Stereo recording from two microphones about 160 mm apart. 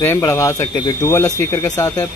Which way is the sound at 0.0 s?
15° left (ahead or behind).